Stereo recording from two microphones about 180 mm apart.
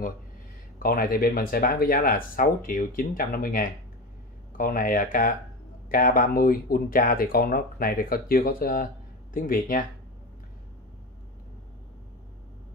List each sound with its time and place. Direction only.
0.8 s speech: 55° left (ahead or behind)